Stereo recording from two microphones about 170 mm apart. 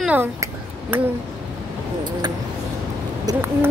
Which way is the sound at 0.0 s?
10° right (ahead or behind).